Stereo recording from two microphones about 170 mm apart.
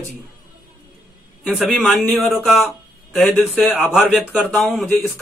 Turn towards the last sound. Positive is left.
turn(degrees=0)  # may be behind; listen again after turning